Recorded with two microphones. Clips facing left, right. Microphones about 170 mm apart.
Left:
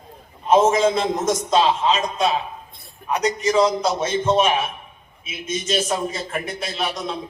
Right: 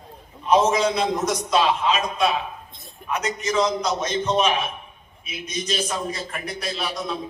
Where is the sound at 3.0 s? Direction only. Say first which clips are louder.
Left 5 dB; 35° left (ahead or behind).